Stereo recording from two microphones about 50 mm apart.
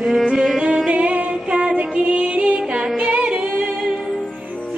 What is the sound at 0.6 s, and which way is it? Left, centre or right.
Music, centre.